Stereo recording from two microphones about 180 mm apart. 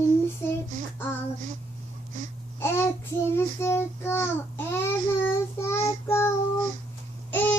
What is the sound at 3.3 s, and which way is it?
Child singing, 15° left (ahead or behind).